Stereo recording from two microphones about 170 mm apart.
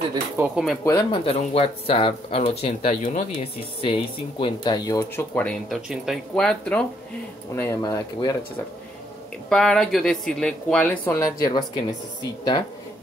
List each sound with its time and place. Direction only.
0.4 s speech: 5° right (ahead or behind)
0.8 s speech: 20° left (ahead or behind)
1.2 s speech: 35° left (ahead or behind)
3.8 s speech: 30° left (ahead or behind)
9.5 s speech: 5° left (ahead or behind); by 12.6 s 25° left (ahead or behind)